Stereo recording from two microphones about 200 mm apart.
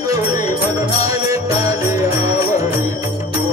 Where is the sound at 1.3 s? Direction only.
15° right (ahead or behind).